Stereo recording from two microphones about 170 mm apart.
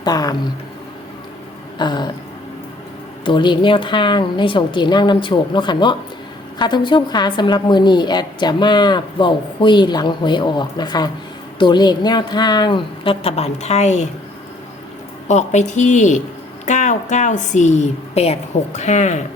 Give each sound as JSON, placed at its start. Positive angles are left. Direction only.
{"t": 0.0, "sound": "speech", "side_deg": 20}
{"t": 1.8, "sound": "a woman's voice", "side_deg": 25}
{"t": 3.2, "sound": "a woman's voice", "side_deg": 25}
{"t": 15.3, "sound": "a woman's voice", "side_deg": 45}